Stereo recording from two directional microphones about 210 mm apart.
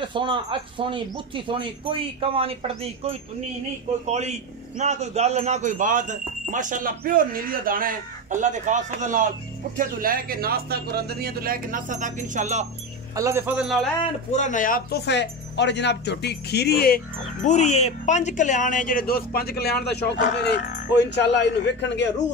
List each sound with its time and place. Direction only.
0.1 s speech: 25° right (ahead or behind)
13.1 s speech: 15° right (ahead or behind)
14.3 s speech: 35° left (ahead or behind); by 22.1 s 55° left (ahead or behind)